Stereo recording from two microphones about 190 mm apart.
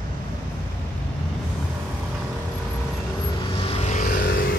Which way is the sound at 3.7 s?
40° left (ahead or behind).